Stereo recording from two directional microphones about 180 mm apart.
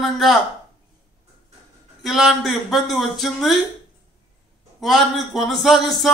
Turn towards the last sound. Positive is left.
turn(degrees=0)  # may be behind; listen again after turning